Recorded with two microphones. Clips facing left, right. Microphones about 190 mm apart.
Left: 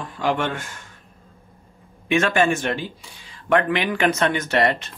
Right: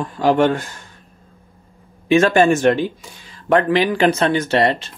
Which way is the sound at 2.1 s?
35° right (ahead or behind).